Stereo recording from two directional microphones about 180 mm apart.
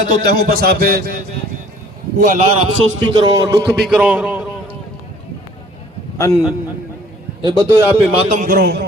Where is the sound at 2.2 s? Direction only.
45° right (ahead or behind).